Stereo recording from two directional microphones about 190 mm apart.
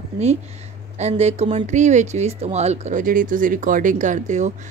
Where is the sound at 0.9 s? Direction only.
35° right (ahead or behind).